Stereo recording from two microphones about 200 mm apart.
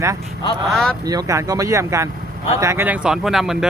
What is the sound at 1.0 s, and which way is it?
Speech, 20° right (ahead or behind).